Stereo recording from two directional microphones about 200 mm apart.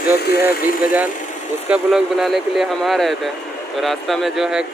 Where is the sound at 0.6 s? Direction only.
45° left (ahead or behind).